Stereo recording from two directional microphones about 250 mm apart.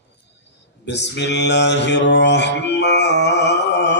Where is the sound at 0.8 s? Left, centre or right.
Left.